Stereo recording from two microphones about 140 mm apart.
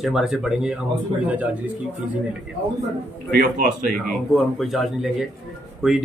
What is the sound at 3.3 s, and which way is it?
Speech, 85° right.